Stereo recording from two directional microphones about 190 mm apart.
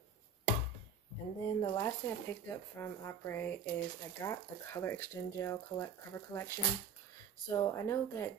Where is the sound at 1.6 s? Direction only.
20° left (ahead or behind).